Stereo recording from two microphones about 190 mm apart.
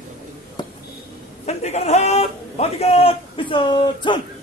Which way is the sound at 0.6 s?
25° left (ahead or behind).